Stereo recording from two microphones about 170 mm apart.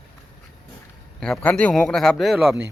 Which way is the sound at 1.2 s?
5° left (ahead or behind).